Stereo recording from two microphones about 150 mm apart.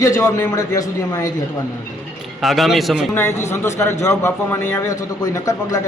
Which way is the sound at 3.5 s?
20° left (ahead or behind).